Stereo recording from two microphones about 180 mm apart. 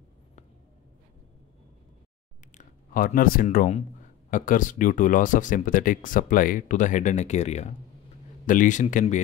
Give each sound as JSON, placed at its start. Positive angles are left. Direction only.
{"t": 2.5, "sound": "speech", "side_deg": 45}